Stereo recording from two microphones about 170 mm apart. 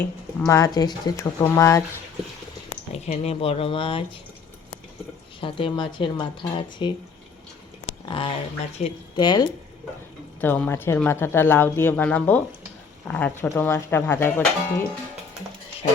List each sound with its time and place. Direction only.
0.0 s speech: 15° left (ahead or behind)
2.9 s speech: 35° left (ahead or behind)
5.4 s speech: 30° left (ahead or behind)
8.0 s speech: 30° left (ahead or behind)
10.4 s speech: 10° left (ahead or behind)